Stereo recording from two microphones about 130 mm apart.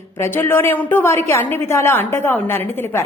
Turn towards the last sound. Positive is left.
turn(degrees=20)  # may be behind; listen again after turning